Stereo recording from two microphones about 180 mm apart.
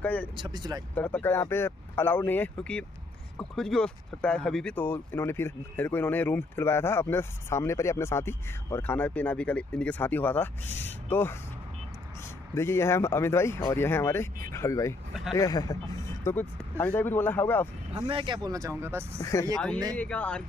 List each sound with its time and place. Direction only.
0.0 s speech: 10° left (ahead or behind)
0.4 s speech: 20° right (ahead or behind)
0.9 s speech: 10° left (ahead or behind)
12.5 s speech: 15° left (ahead or behind)
17.9 s speech: 30° right (ahead or behind)
19.5 s speech: 5° left (ahead or behind)